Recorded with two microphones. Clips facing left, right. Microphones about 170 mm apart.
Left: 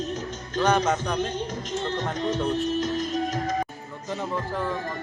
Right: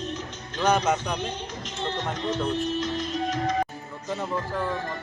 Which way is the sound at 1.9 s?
45° left (ahead or behind).